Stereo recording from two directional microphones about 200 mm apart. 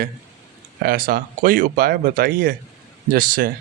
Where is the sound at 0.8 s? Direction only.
45° right (ahead or behind).